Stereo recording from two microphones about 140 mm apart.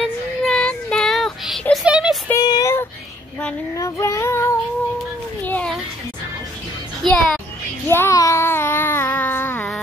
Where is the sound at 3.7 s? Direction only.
20° left (ahead or behind).